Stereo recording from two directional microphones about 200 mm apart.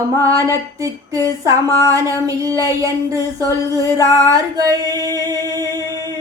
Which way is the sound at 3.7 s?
15° right (ahead or behind).